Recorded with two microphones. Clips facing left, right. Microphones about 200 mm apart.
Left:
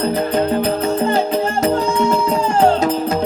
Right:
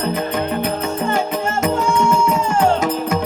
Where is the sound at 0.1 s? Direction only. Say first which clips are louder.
Left 4 dB; 35° left (ahead or behind).